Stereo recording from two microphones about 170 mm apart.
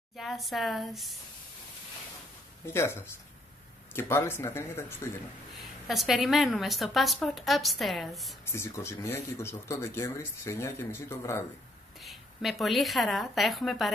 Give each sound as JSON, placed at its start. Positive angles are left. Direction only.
{"t": 0.1, "sound": "a woman's voice", "side_deg": 0}
{"t": 2.6, "sound": "speech", "side_deg": 15}
{"t": 5.5, "sound": "a woman's voice", "side_deg": 0}
{"t": 8.5, "sound": "speech", "side_deg": 15}
{"t": 12.0, "sound": "a woman's voice", "side_deg": 0}